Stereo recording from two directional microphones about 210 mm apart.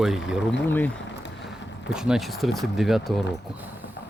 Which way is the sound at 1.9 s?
5° right (ahead or behind).